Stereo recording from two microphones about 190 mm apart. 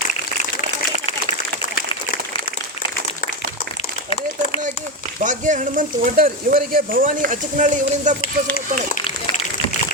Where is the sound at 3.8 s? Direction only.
30° left (ahead or behind).